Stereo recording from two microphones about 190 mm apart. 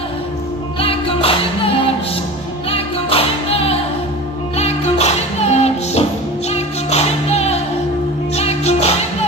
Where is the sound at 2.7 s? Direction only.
30° left (ahead or behind).